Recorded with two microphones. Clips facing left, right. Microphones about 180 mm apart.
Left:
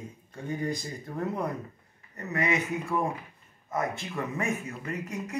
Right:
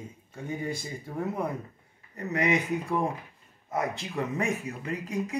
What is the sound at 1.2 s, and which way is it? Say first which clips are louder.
Speech: even; 10° right (ahead or behind).